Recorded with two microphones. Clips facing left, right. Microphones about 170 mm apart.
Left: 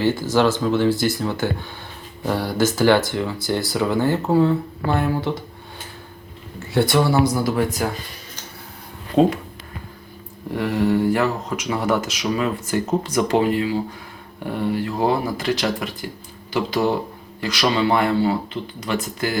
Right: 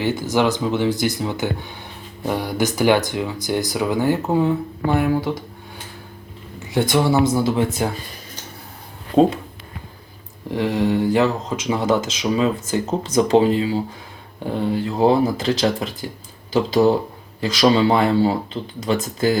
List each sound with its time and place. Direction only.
0.0 s speech: 20° right (ahead or behind)
6.6 s speech: 15° right (ahead or behind)
10.6 s speech: 20° right (ahead or behind)